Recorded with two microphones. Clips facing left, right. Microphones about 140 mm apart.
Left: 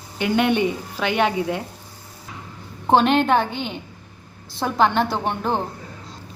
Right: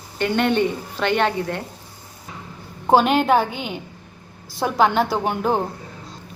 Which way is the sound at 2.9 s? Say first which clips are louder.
Right 1 dB; 5° right (ahead or behind).